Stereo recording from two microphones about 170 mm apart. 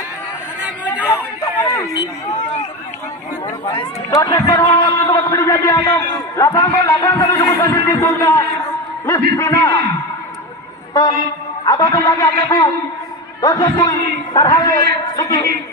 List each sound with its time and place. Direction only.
1.4 s a sound: 20° left (ahead or behind)
4.1 s a man's voice: 15° left (ahead or behind)
10.9 s a woman's voice: 20° left (ahead or behind)